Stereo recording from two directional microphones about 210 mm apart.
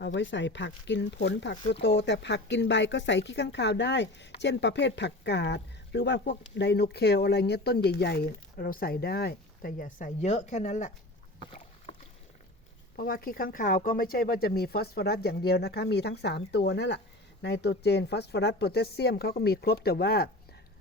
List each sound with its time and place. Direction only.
0.0 s speech: 60° left (ahead or behind); by 10.9 s 35° left (ahead or behind)
13.0 s speech: 45° left (ahead or behind)